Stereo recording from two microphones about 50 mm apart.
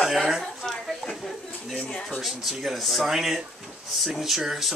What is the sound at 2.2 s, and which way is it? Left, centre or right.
Speech, centre.